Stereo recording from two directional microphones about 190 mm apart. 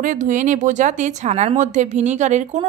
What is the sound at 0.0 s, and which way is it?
A woman's voice, 40° right (ahead or behind).